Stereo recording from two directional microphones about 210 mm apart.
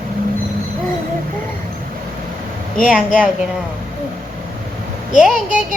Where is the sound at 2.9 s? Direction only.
5° right (ahead or behind).